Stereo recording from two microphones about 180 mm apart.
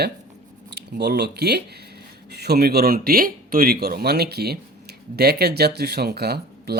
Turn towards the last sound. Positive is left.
turn(degrees=-60)  # may be behind; listen again after turning